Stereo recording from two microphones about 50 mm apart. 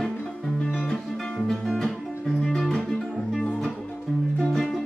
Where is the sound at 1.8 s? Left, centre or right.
Centre.